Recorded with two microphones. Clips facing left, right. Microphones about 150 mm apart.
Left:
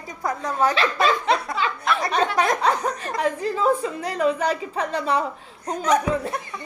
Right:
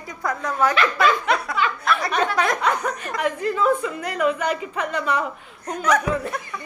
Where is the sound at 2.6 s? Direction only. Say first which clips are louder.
Left 1 dB; 35° left (ahead or behind).